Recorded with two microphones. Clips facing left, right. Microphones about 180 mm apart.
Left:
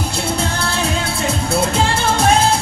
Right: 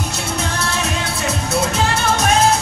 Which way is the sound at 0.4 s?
30° left (ahead or behind).